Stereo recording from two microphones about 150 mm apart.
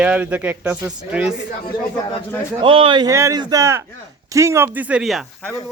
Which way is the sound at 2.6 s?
35° right (ahead or behind).